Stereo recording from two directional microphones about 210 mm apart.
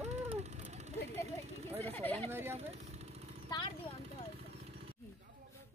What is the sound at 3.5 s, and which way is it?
Speech, 20° left (ahead or behind).